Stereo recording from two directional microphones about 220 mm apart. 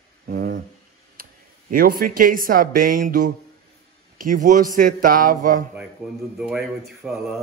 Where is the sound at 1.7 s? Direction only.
40° right (ahead or behind).